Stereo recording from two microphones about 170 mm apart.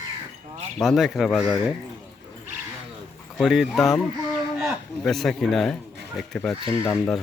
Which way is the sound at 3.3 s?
Centre (ahead or behind).